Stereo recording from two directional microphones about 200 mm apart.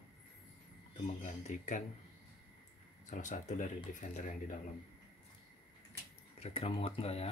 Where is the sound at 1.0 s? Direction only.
40° left (ahead or behind).